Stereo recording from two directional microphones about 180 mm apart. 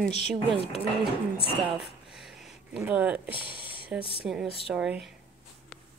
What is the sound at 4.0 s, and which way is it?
Speech, 30° left (ahead or behind).